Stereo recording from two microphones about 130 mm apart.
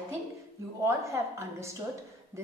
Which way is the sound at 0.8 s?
20° right (ahead or behind).